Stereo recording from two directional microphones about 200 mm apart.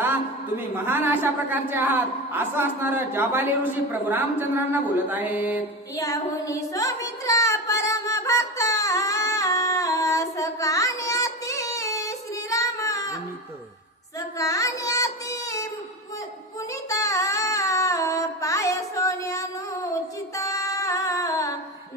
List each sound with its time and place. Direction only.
0.7 s a woman's voice: 10° right (ahead or behind)
5.9 s a sound: 15° left (ahead or behind)
14.4 s child singing: 15° left (ahead or behind)
16.9 s music: 15° left (ahead or behind)